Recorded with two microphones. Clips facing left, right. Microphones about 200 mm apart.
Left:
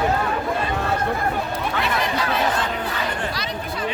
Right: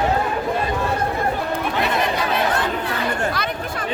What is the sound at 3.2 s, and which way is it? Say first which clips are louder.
Chatter: right 3 dB; 55° right (ahead or behind).